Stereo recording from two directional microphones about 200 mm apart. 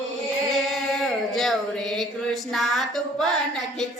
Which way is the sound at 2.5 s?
Centre (ahead or behind).